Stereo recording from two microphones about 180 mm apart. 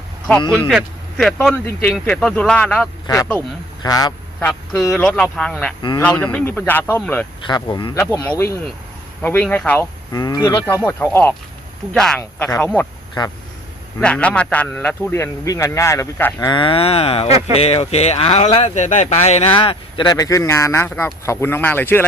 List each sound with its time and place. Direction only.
0.3 s speech: 10° left (ahead or behind)
0.7 s speech: 5° right (ahead or behind)
1.4 s speech: 10° left (ahead or behind)
3.8 s speech: 20° left (ahead or behind)
4.4 s speech: 5° left (ahead or behind)
7.4 s speech: 25° left (ahead or behind)
9.2 s speech: 10° left (ahead or behind)
10.1 s speech: 20° left (ahead or behind)
10.8 s speech: 10° left (ahead or behind)
14.0 s speech: 5° left (ahead or behind)
16.5 s speech: 30° left (ahead or behind); by 22.0 s 10° left (ahead or behind)